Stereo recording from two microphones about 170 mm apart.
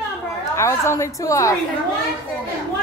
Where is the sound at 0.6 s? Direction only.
15° left (ahead or behind).